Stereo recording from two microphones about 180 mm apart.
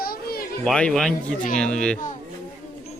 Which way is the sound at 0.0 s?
55° left (ahead or behind).